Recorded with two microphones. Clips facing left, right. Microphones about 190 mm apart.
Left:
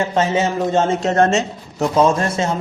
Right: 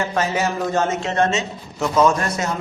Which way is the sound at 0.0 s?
25° left (ahead or behind).